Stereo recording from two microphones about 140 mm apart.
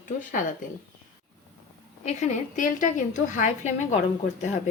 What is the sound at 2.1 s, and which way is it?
A woman's voice, 65° left (ahead or behind).